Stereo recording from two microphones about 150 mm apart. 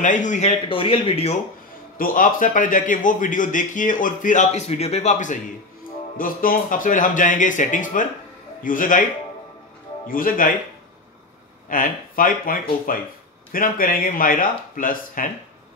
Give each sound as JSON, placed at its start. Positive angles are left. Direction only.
{"t": 0.0, "sound": "a man's voice", "side_deg": 55}
{"t": 0.7, "sound": "speech", "side_deg": 40}
{"t": 2.0, "sound": "a man's voice", "side_deg": 65}
{"t": 6.1, "sound": "a man's voice", "side_deg": 70}
{"t": 10.0, "sound": "speech", "side_deg": 70}
{"t": 11.7, "sound": "speech", "side_deg": 65}